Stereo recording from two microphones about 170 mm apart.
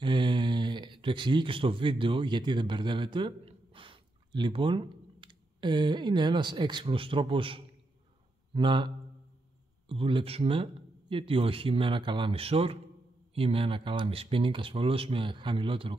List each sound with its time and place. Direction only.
0.0 s speech: 25° right (ahead or behind)